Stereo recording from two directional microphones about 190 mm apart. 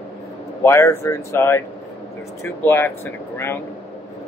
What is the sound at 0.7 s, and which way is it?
Speech, 15° left (ahead or behind).